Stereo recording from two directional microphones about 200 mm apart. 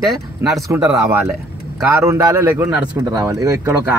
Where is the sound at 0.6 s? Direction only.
15° right (ahead or behind).